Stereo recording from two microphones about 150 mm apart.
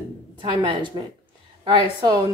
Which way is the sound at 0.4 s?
30° right (ahead or behind).